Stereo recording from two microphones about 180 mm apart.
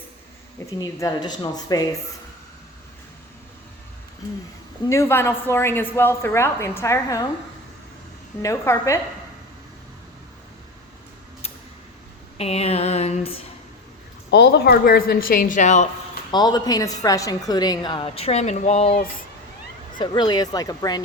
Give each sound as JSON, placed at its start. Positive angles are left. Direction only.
{"t": 0.8, "sound": "a woman's voice", "side_deg": 20}
{"t": 4.9, "sound": "a woman's voice", "side_deg": 15}
{"t": 8.4, "sound": "a woman's voice", "side_deg": 15}
{"t": 12.4, "sound": "a sound", "side_deg": 35}
{"t": 14.3, "sound": "a woman's voice", "side_deg": 70}
{"t": 16.3, "sound": "a woman's voice", "side_deg": 25}
{"t": 20.0, "sound": "a woman's voice", "side_deg": 25}